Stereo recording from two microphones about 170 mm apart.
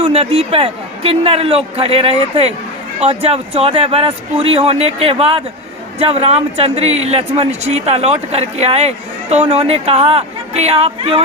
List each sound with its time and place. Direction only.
0.0 s speech: 35° right (ahead or behind)